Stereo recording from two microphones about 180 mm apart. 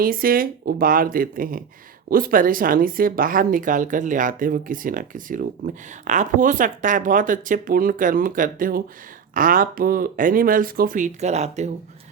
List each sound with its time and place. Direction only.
0.0 s speech: 55° right (ahead or behind)